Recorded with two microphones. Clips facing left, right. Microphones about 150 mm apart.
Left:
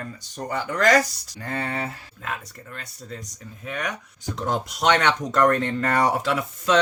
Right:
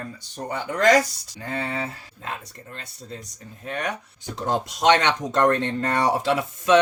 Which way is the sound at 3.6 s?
30° right (ahead or behind).